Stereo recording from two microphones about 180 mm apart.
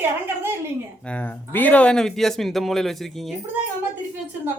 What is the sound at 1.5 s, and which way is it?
Speech, 10° left (ahead or behind).